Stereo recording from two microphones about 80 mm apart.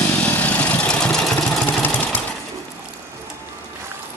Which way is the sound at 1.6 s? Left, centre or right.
Left.